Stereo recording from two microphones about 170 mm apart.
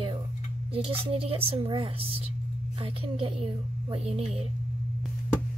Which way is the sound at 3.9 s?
35° right (ahead or behind).